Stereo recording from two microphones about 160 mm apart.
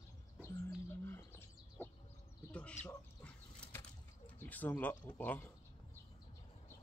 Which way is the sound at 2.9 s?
10° left (ahead or behind).